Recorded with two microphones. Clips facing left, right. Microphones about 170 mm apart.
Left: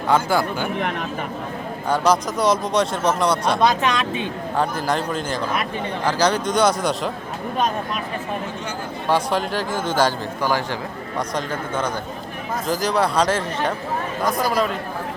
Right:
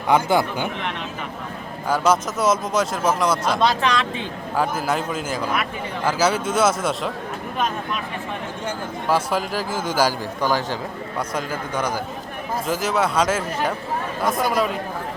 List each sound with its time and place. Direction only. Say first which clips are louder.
0.1 s speech: right 1 dB; 20° right (ahead or behind)
0.8 s speech: left 4 dB; 45° left (ahead or behind)
1.9 s speech: left 1 dB; 5° right (ahead or behind)
3.6 s speech: left 1 dB; 20° left (ahead or behind)
4.5 s speech: even; 5° right (ahead or behind)
9.0 s a man's voice: left 1 dB; 5° right (ahead or behind)